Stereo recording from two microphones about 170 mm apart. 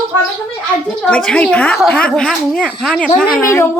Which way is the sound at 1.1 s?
5° left (ahead or behind).